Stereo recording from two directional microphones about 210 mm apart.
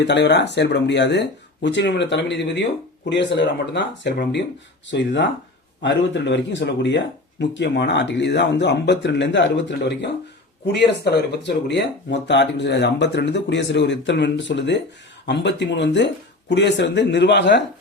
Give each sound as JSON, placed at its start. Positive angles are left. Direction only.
{"t": 0.0, "sound": "speech", "side_deg": 55}